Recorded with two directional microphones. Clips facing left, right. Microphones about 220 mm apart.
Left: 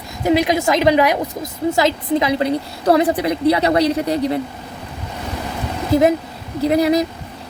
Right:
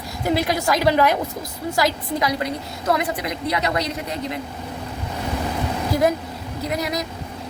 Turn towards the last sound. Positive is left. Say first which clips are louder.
# left 10 dB
turn(degrees=30)  # may be behind; listen again after turning